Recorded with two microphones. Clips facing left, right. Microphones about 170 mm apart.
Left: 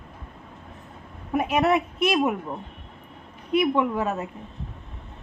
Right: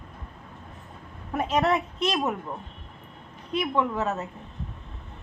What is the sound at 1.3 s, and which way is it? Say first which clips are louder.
A woman's voice: left 3 dB; 10° left (ahead or behind).